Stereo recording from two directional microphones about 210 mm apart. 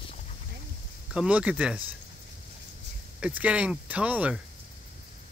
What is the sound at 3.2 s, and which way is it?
Speech, 5° right (ahead or behind).